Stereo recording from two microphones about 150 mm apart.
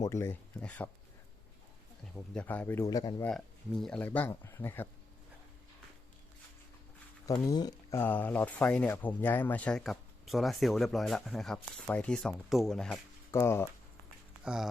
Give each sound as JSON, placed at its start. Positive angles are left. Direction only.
{"t": 0.0, "sound": "speech", "side_deg": 15}
{"t": 2.1, "sound": "speech", "side_deg": 5}
{"t": 3.2, "sound": "speech", "side_deg": 5}
{"t": 7.4, "sound": "speech", "side_deg": 25}
{"t": 13.3, "sound": "speech", "side_deg": 15}
{"t": 14.4, "sound": "speech", "side_deg": -5}